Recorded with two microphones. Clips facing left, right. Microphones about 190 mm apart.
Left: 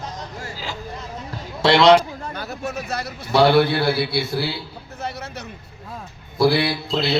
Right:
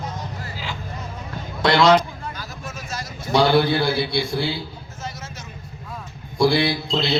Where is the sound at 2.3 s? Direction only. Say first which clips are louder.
Left 7 dB; 60° left (ahead or behind).